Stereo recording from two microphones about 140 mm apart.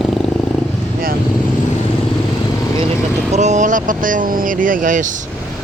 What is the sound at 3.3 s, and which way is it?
Speech, 55° right (ahead or behind).